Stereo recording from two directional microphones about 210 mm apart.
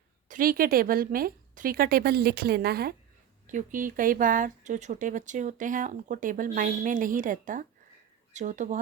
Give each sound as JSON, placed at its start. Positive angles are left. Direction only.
{"t": 0.3, "sound": "a woman's voice", "side_deg": -40}
{"t": 3.4, "sound": "speech", "side_deg": -35}